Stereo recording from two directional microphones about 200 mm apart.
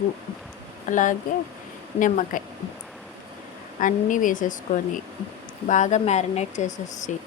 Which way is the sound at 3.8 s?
40° left (ahead or behind).